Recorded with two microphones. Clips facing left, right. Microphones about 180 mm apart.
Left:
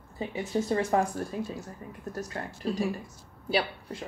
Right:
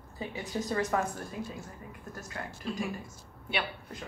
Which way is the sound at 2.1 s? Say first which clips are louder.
Left 5 dB; 35° left (ahead or behind).